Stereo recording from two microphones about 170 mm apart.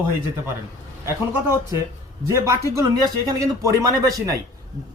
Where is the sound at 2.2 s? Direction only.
20° right (ahead or behind).